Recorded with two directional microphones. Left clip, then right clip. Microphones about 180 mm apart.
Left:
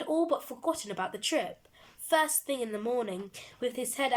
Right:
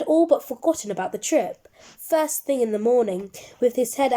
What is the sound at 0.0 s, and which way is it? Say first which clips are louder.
A woman's voice: right 11 dB; 25° right (ahead or behind).